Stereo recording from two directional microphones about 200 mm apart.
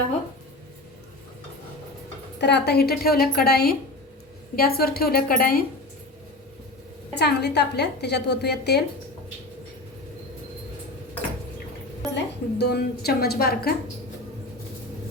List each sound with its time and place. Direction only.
2.4 s a woman's voice: 60° left (ahead or behind)
7.2 s a woman's voice: 55° left (ahead or behind)
12.1 s a woman's voice: 55° left (ahead or behind)